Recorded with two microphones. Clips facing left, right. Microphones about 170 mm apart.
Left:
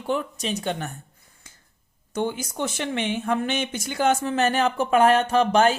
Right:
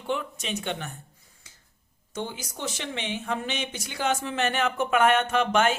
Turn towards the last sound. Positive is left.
turn(degrees=35)  # may be behind; listen again after turning